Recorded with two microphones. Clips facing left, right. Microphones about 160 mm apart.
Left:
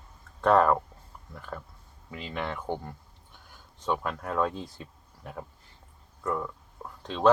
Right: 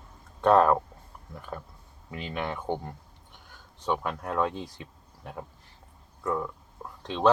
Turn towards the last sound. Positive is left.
turn(degrees=0)  # may be behind; listen again after turning